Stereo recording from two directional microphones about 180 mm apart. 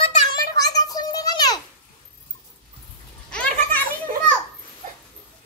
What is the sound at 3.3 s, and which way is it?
Children playing, 5° left (ahead or behind).